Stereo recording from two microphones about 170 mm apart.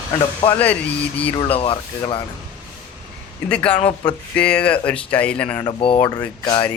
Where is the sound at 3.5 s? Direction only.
5° left (ahead or behind).